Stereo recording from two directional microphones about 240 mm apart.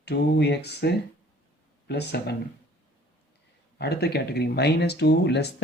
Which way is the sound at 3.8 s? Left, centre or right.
Left.